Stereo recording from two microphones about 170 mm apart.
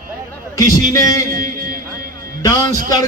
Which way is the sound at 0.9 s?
20° left (ahead or behind).